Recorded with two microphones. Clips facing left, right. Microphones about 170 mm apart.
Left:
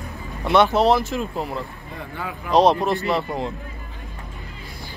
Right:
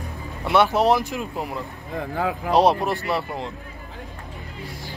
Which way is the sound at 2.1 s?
90° right.